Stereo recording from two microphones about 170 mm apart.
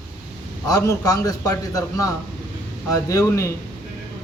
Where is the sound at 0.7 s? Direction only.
20° left (ahead or behind).